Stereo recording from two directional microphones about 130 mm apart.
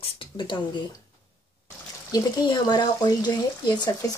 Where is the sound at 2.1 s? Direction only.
30° left (ahead or behind).